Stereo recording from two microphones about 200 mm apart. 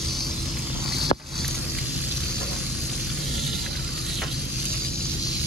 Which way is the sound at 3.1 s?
Centre (ahead or behind).